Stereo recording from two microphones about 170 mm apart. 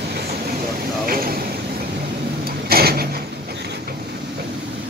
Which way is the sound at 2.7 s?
65° right (ahead or behind).